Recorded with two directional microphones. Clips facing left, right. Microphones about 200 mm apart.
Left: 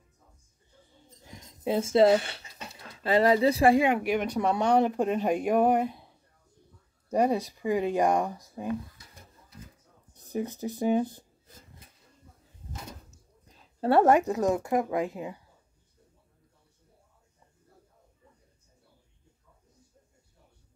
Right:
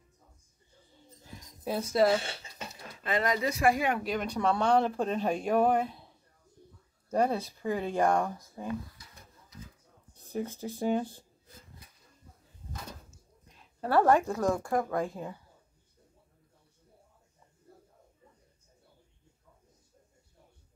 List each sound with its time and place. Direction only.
1.2 s a sound: 20° left (ahead or behind)
2.7 s speech: 35° left (ahead or behind)
3.8 s speech: 15° left (ahead or behind)
7.1 s speech: 15° left (ahead or behind)
10.2 s speech: 15° left (ahead or behind)
13.5 s a woman's voice: 30° left (ahead or behind); by 15.3 s 5° left (ahead or behind)